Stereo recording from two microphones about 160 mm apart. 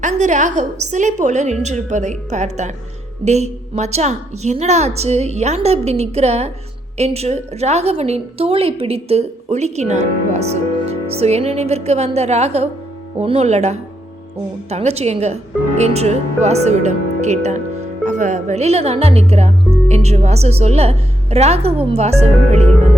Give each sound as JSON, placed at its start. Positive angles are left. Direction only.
{"t": 0.0, "sound": "a woman's voice", "side_deg": -50}